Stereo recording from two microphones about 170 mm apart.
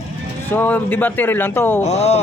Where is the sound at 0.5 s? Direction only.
10° left (ahead or behind).